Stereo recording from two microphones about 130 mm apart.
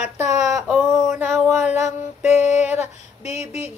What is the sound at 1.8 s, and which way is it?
Mantra, 60° left (ahead or behind).